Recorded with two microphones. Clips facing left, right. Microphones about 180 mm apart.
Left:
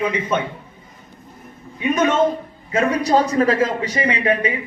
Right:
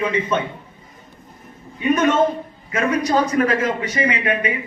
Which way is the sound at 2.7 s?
30° left (ahead or behind).